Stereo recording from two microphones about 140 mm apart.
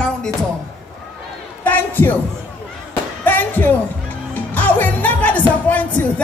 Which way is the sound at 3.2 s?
15° left (ahead or behind).